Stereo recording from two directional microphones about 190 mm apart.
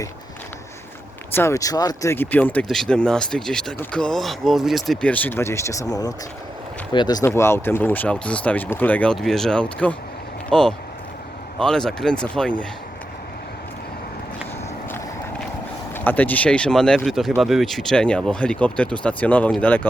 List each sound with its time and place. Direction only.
1.3 s speech: 15° left (ahead or behind)
16.0 s speech: 10° left (ahead or behind)